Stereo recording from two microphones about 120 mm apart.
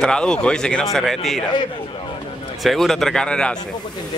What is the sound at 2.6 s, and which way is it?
Speech, centre (ahead or behind).